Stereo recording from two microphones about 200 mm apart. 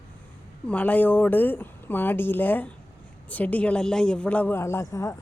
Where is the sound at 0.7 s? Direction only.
5° left (ahead or behind).